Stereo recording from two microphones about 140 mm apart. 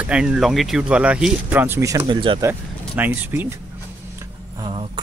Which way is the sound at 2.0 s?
35° right (ahead or behind).